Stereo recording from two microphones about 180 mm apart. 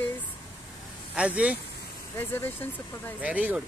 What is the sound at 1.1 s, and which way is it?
Speech, 5° right (ahead or behind).